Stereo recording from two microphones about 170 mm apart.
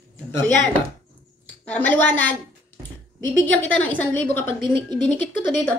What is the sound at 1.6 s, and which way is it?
A woman's voice, 10° left (ahead or behind).